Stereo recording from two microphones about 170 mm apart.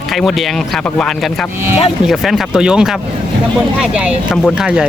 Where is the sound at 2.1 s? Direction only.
Centre (ahead or behind).